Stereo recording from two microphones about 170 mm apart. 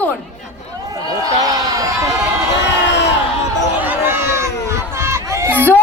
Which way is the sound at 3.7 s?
10° right (ahead or behind).